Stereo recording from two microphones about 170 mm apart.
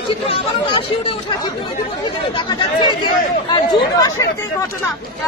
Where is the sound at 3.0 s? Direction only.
25° left (ahead or behind).